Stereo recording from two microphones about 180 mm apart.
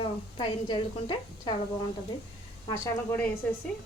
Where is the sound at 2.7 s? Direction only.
10° left (ahead or behind).